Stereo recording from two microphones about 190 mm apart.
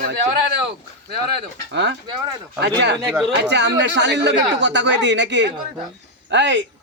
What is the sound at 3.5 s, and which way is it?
Speech, 65° right (ahead or behind).